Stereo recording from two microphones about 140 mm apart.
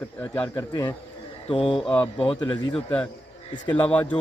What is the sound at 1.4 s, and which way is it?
Speech, 40° left (ahead or behind).